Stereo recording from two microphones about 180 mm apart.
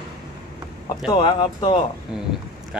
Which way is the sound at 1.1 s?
25° left (ahead or behind).